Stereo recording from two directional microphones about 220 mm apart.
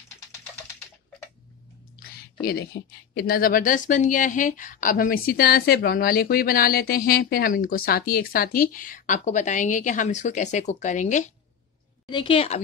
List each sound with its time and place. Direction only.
2.0 s a sound: 45° left (ahead or behind)
2.4 s speech: 45° left (ahead or behind)
12.1 s a woman's voice: 25° left (ahead or behind)